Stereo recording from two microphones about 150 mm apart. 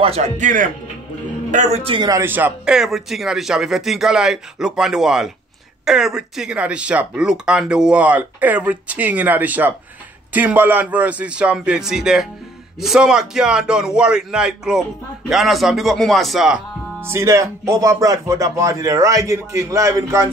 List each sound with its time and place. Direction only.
0.0 s speech: 45° right (ahead or behind)
2.0 s a man's voice: 15° right (ahead or behind)
17.0 s speech: 15° right (ahead or behind)